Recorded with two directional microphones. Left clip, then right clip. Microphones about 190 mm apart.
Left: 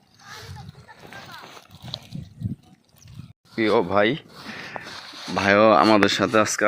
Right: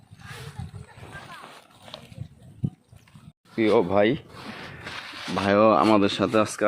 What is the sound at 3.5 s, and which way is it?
Speech, 5° right (ahead or behind).